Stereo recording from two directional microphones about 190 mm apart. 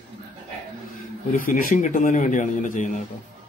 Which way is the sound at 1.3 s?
45° left (ahead or behind).